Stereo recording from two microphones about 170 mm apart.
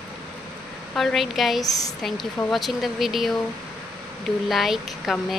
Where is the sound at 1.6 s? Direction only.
20° left (ahead or behind).